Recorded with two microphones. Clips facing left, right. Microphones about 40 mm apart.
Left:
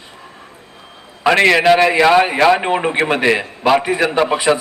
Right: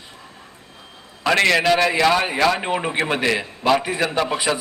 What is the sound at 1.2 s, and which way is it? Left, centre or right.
A man's voice, left.